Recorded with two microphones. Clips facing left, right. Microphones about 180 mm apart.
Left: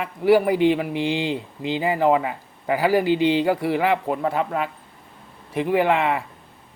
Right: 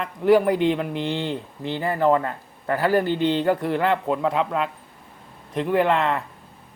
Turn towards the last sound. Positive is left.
turn(degrees=10)  # may be behind; listen again after turning